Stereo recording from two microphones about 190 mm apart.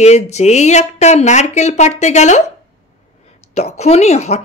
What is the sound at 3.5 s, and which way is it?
Speech, 35° left (ahead or behind).